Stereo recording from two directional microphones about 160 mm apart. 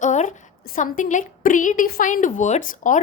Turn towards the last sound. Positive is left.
turn(degrees=55)  # may be behind; listen again after turning